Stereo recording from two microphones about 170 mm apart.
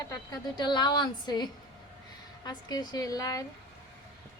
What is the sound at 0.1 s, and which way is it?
Speech, 25° left (ahead or behind).